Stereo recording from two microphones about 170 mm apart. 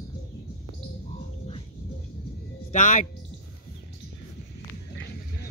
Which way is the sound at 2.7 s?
50° left (ahead or behind).